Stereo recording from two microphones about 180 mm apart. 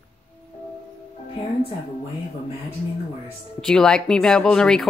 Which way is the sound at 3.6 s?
5° left (ahead or behind).